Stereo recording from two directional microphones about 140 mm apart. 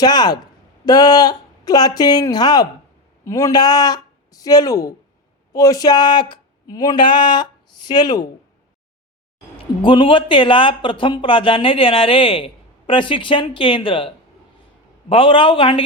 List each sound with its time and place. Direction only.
0.0 s speech: 30° left (ahead or behind)
9.8 s speech: 35° left (ahead or behind)
15.1 s speech: 35° left (ahead or behind)